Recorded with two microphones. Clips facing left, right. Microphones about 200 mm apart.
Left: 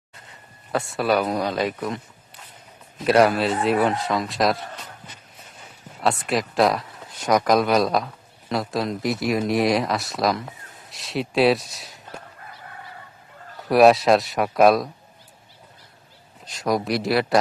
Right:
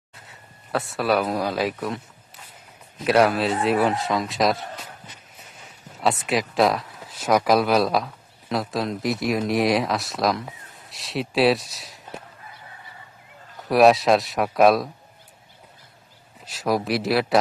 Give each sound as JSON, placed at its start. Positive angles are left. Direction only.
{"t": 0.3, "sound": "speech", "side_deg": 0}
{"t": 6.0, "sound": "speech", "side_deg": 0}
{"t": 13.6, "sound": "speech", "side_deg": 0}
{"t": 16.5, "sound": "speech", "side_deg": -5}